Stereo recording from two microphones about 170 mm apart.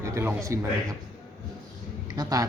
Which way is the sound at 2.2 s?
20° right (ahead or behind).